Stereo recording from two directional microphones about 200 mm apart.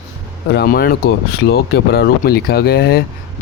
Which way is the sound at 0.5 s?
50° left (ahead or behind).